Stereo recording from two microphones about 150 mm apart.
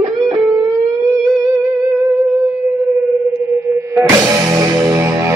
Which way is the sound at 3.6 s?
15° right (ahead or behind).